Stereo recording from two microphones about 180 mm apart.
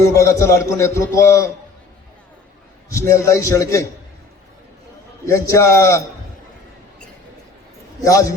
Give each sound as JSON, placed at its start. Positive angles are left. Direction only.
{"t": 0.0, "sound": "a man's voice", "side_deg": 15}
{"t": 2.9, "sound": "a man's voice", "side_deg": 15}
{"t": 5.2, "sound": "a man's voice", "side_deg": 15}
{"t": 8.0, "sound": "a man's voice", "side_deg": 20}